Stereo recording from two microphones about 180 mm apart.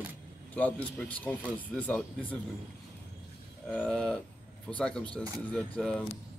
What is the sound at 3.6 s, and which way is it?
Speech, 5° left (ahead or behind).